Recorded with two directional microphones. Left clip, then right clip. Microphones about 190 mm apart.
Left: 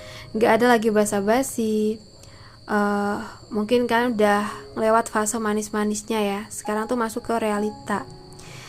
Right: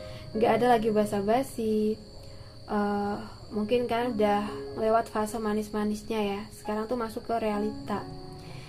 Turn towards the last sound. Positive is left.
turn(degrees=35)  # may be behind; listen again after turning